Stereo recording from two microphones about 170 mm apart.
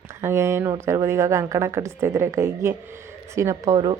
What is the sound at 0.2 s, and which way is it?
Speech, 15° right (ahead or behind).